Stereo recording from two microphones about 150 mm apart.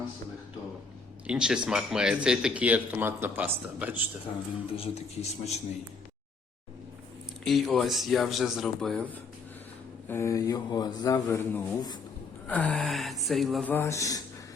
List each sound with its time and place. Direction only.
1.3 s speech: 5° right (ahead or behind)
4.8 s speech: 45° left (ahead or behind)
7.4 s speech: centre (ahead or behind)
10.1 s speech: 20° left (ahead or behind)
12.5 s speech: 10° left (ahead or behind)
13.7 s speech: 15° left (ahead or behind)